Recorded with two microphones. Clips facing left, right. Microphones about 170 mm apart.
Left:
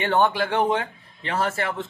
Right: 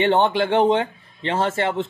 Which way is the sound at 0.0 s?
25° right (ahead or behind).